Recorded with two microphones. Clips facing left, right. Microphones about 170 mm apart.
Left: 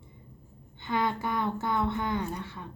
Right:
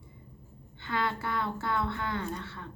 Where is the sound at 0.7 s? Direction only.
20° left (ahead or behind).